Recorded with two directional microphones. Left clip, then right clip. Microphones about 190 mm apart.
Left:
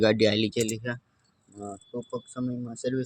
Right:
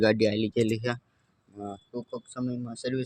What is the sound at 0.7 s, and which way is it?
Speech, 35° right (ahead or behind).